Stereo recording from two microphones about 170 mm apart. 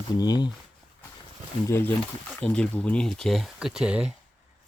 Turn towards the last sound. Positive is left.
turn(degrees=-5)  # may be behind; listen again after turning